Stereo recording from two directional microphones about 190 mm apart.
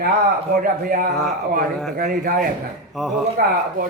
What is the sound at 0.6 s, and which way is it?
A man's voice, 45° right (ahead or behind).